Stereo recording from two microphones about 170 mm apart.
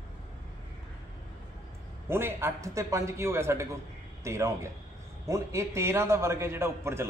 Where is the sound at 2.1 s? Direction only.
15° right (ahead or behind).